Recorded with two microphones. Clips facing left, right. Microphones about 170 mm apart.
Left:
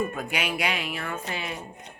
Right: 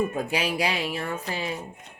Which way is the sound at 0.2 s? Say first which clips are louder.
Right 3 dB; 30° right (ahead or behind).